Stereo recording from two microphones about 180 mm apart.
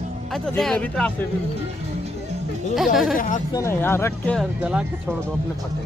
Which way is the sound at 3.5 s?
15° left (ahead or behind).